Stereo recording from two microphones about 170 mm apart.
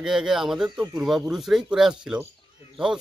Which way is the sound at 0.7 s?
20° right (ahead or behind).